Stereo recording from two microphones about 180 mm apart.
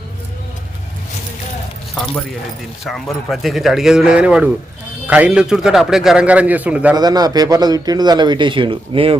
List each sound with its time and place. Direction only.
2.8 s a man's voice: centre (ahead or behind)
6.9 s a man's voice: 20° right (ahead or behind)